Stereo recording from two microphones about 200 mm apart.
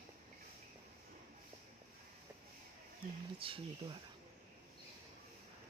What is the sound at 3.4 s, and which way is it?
Speech, 25° right (ahead or behind).